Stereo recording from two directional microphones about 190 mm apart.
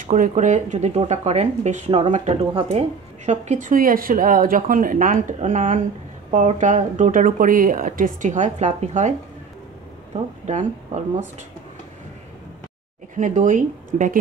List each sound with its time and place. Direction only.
0.0 s speech: 40° right (ahead or behind)
10.4 s speech: 40° right (ahead or behind)
13.1 s speech: 40° right (ahead or behind)